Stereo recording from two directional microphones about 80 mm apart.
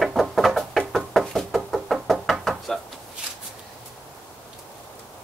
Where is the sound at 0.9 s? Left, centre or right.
Centre.